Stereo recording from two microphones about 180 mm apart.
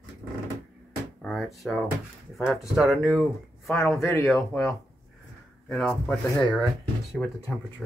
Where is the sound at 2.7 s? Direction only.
Centre (ahead or behind).